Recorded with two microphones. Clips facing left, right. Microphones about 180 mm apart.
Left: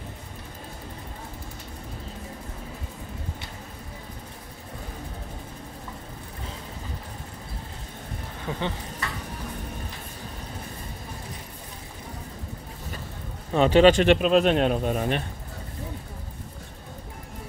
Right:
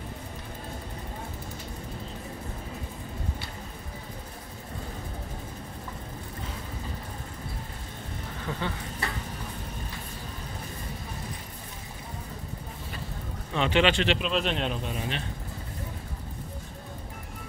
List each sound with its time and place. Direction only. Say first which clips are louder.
8.5 s speech: left 3 dB; 20° left (ahead or behind)
13.5 s speech: left 8 dB; 40° left (ahead or behind)